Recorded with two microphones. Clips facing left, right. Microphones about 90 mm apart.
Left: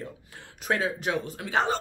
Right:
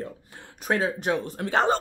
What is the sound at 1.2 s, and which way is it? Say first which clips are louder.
Speech: right 5 dB; 45° right (ahead or behind).